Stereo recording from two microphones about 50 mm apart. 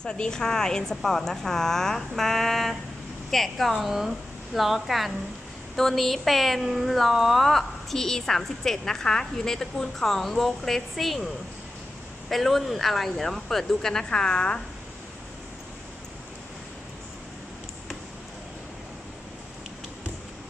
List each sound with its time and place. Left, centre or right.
0.0 s a woman's voice: centre
12.3 s speech: centre